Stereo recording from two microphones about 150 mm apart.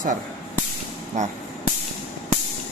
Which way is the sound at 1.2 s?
55° right (ahead or behind).